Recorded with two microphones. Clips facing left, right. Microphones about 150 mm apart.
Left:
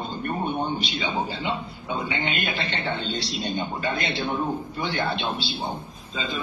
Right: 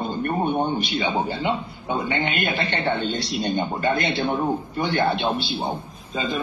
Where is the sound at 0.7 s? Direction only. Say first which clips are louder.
Right 4 dB; 55° right (ahead or behind).